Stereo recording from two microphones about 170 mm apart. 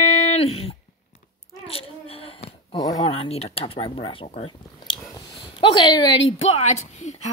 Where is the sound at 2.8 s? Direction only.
20° left (ahead or behind).